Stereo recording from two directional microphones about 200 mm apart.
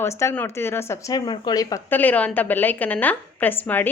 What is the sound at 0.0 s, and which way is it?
Speech, 15° left (ahead or behind).